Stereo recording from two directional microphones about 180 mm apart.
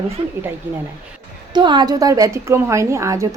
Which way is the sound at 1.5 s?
25° right (ahead or behind).